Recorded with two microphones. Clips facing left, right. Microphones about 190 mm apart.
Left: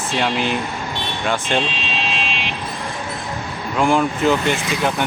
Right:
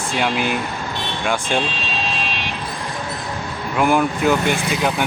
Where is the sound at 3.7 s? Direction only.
5° right (ahead or behind).